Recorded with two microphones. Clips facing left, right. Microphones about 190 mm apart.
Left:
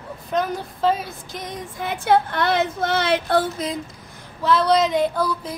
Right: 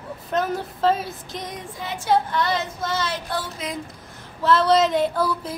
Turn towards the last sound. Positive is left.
turn(degrees=-5)  # may be behind; listen again after turning